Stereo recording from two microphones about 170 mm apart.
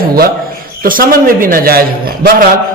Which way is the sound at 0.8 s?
55° right (ahead or behind).